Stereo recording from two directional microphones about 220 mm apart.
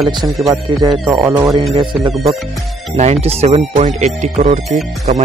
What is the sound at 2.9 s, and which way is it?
Speech, 30° right (ahead or behind).